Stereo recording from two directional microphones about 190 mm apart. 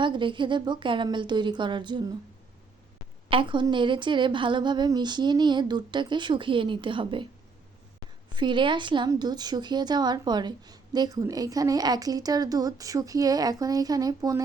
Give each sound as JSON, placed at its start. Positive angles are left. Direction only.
{"t": 0.0, "sound": "speech", "side_deg": -25}
{"t": 3.2, "sound": "speech", "side_deg": -25}
{"t": 8.4, "sound": "speech", "side_deg": -25}